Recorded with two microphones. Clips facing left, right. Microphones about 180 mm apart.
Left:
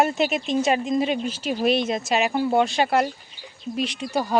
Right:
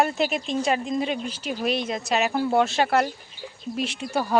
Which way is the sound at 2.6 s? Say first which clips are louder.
Left 1 dB; centre (ahead or behind).